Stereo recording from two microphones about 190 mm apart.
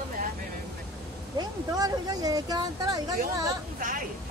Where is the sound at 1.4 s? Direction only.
20° right (ahead or behind).